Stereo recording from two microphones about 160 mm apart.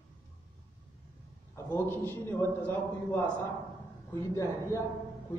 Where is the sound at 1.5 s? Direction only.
15° left (ahead or behind).